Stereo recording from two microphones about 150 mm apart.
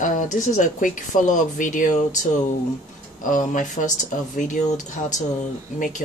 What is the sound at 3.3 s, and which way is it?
Speech, 60° left (ahead or behind).